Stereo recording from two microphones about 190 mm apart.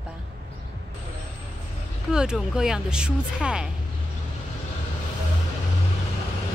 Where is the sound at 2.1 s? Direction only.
5° right (ahead or behind).